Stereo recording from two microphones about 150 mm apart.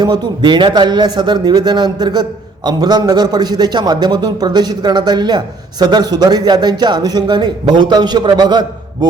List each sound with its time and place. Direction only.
0.0 s a man's voice: 30° right (ahead or behind)